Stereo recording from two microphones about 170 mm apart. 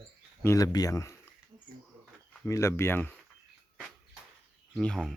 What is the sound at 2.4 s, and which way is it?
Speech, 15° left (ahead or behind).